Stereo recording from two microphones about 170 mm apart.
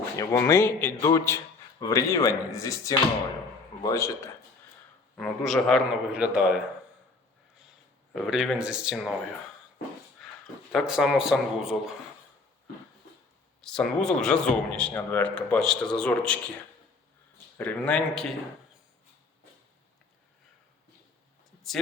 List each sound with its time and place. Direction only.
0.2 s speech: 20° left (ahead or behind)
5.1 s a man's voice: 5° left (ahead or behind)
8.1 s a man's voice: 5° right (ahead or behind)
10.2 s a sound: centre (ahead or behind)
10.7 s a man's voice: centre (ahead or behind)
13.6 s a man's voice: centre (ahead or behind)
17.6 s speech: 10° left (ahead or behind)